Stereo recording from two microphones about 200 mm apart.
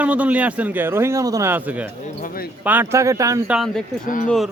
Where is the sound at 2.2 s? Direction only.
45° left (ahead or behind).